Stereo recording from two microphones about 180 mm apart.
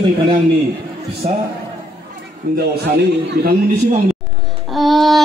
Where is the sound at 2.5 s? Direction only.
55° right (ahead or behind).